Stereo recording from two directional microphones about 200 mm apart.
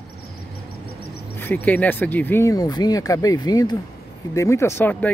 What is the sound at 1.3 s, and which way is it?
Speech, 10° left (ahead or behind).